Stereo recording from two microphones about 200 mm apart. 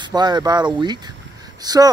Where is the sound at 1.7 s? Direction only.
20° right (ahead or behind).